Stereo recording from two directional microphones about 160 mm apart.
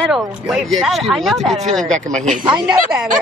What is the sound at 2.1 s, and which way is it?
Speech, 50° right (ahead or behind).